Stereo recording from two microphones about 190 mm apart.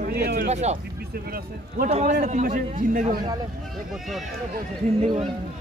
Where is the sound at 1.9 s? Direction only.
35° right (ahead or behind).